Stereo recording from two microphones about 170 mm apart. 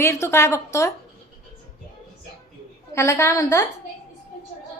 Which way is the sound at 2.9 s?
15° left (ahead or behind).